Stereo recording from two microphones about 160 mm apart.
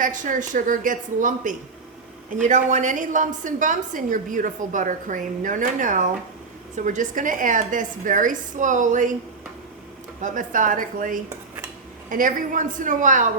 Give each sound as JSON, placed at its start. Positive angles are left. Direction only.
{"t": 0.0, "sound": "a woman's voice", "side_deg": -55}
{"t": 10.2, "sound": "a woman's voice", "side_deg": -55}